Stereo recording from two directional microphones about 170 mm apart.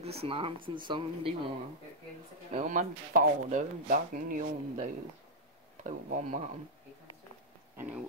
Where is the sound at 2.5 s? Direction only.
45° right (ahead or behind).